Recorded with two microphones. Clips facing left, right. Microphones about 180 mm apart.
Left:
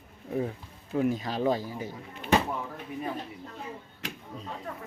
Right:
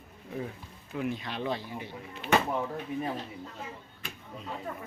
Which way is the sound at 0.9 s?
40° left (ahead or behind).